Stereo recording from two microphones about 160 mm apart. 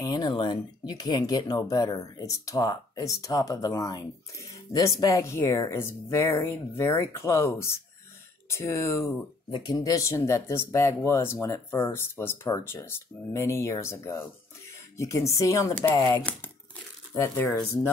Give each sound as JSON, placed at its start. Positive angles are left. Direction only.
{"t": 0.0, "sound": "speech", "side_deg": 25}